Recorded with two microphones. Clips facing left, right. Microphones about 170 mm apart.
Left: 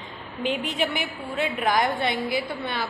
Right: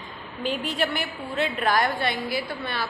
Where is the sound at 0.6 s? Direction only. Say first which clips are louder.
Even; 20° left (ahead or behind).